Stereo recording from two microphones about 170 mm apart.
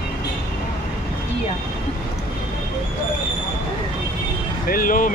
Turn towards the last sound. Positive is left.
turn(degrees=55)  # may be behind; listen again after turning